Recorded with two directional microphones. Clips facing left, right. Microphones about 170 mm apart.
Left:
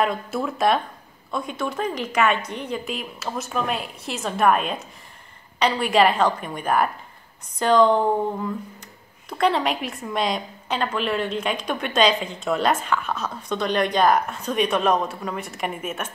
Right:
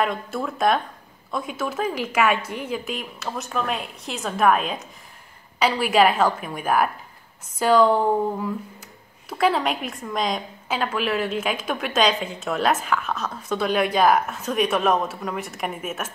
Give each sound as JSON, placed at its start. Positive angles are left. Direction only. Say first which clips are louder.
{"t": 0.0, "sound": "a woman's voice", "louder": "left 1 dB", "side_deg": 5}